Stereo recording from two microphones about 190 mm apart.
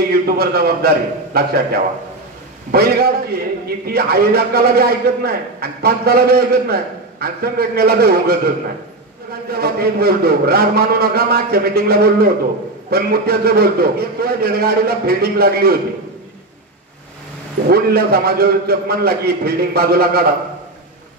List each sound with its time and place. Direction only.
0.1 s a man's voice: 55° right (ahead or behind)
9.5 s a man's voice: 55° right (ahead or behind)
17.6 s a man's voice: 55° right (ahead or behind)